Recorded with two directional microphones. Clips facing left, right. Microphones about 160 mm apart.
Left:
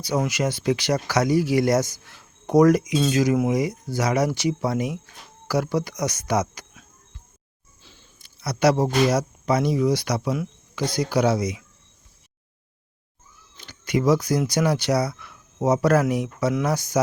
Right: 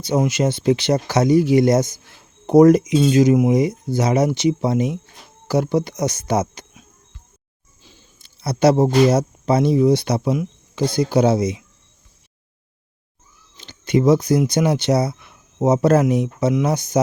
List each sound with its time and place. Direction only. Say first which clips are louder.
0.0 s speech: right 5 dB; 25° right (ahead or behind)
7.8 s a sound: right 3 dB; 15° right (ahead or behind)
8.2 s speech: right 4 dB; 30° right (ahead or behind)
13.6 s speech: right 6 dB; 25° right (ahead or behind)